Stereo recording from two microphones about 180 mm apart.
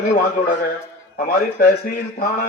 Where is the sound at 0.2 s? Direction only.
55° left (ahead or behind).